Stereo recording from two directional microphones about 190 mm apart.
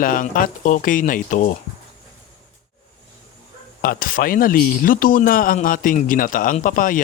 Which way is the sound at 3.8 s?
50° left (ahead or behind).